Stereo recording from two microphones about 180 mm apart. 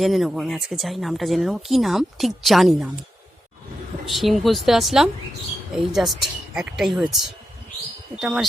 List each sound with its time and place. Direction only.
0.0 s speech: centre (ahead or behind)
4.0 s speech: centre (ahead or behind)
8.2 s speech: centre (ahead or behind)